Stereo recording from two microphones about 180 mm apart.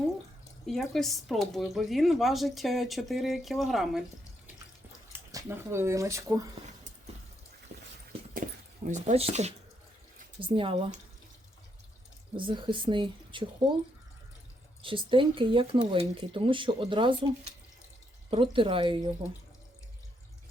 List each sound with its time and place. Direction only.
0.7 s speech: centre (ahead or behind)
5.1 s speech: 15° right (ahead or behind)
8.4 s keys jangling: 45° right (ahead or behind)
8.9 s speech: 40° right (ahead or behind)
12.4 s speech: 25° right (ahead or behind)
14.8 s speech: 30° right (ahead or behind)
18.3 s speech: 30° right (ahead or behind)